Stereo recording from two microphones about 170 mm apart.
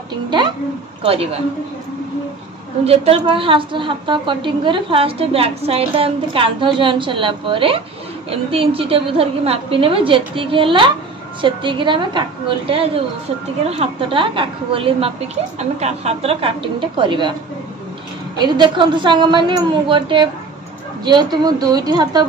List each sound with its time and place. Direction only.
1.0 s a woman's voice: 35° right (ahead or behind)
2.8 s a woman's voice: 35° right (ahead or behind)
18.4 s a woman's voice: 25° right (ahead or behind)